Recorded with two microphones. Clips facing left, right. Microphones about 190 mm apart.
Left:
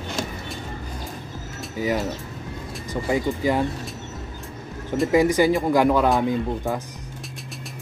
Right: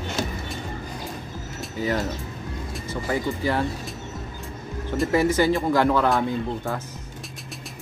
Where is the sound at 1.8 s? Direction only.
15° left (ahead or behind).